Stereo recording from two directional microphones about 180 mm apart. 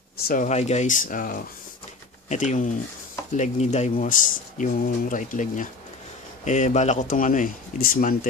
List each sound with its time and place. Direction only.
0.3 s speech: 40° left (ahead or behind)